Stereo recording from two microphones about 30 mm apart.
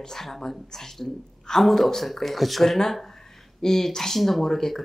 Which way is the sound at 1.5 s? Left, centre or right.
Centre.